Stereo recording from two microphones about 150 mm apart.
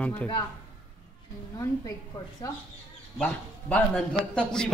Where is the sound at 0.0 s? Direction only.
10° left (ahead or behind).